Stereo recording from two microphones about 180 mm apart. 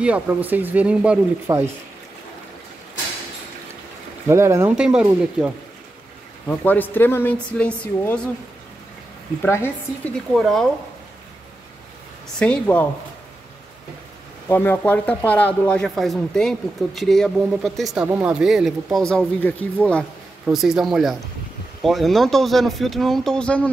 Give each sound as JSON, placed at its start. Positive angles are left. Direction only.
{"t": 0.0, "sound": "speech", "side_deg": -10}
{"t": 1.5, "sound": "speech", "side_deg": -20}
{"t": 4.3, "sound": "speech", "side_deg": -15}
{"t": 4.7, "sound": "speech", "side_deg": -5}
{"t": 6.4, "sound": "speech", "side_deg": 10}
{"t": 9.4, "sound": "speech", "side_deg": 10}
{"t": 12.4, "sound": "speech", "side_deg": 10}
{"t": 14.5, "sound": "speech", "side_deg": 10}